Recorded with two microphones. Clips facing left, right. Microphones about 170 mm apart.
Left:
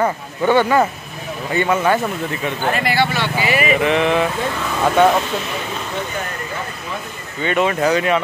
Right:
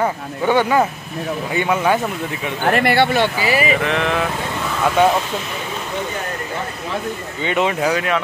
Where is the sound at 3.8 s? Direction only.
Centre (ahead or behind).